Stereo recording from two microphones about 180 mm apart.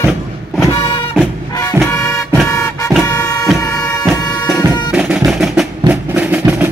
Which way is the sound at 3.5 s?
20° left (ahead or behind).